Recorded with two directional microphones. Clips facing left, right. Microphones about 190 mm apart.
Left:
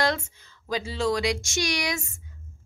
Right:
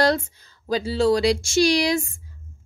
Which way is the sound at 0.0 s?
35° right (ahead or behind).